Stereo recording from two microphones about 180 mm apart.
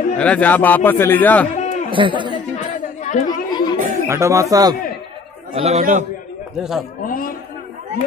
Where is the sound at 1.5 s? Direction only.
40° left (ahead or behind).